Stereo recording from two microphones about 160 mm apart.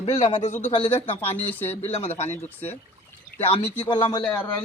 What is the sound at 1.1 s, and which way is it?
Speech, 15° left (ahead or behind).